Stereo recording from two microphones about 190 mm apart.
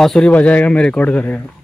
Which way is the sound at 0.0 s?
5° left (ahead or behind).